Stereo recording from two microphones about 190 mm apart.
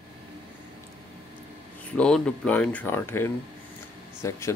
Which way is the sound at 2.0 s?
5° left (ahead or behind).